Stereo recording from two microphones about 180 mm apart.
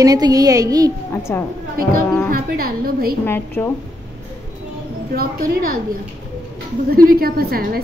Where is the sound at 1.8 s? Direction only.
55° right (ahead or behind).